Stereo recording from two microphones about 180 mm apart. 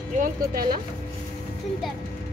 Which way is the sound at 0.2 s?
55° right (ahead or behind).